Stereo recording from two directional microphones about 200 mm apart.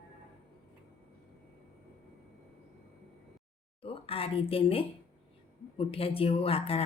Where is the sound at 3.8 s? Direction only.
30° left (ahead or behind).